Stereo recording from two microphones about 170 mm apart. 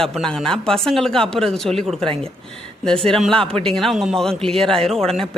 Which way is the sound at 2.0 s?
35° right (ahead or behind).